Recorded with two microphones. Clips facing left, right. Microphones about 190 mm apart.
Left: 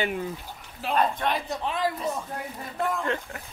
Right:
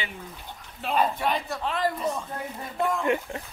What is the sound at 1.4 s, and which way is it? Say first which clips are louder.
Speech: even; 15° left (ahead or behind).